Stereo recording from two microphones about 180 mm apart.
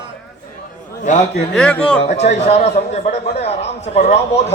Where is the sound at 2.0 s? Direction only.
40° left (ahead or behind).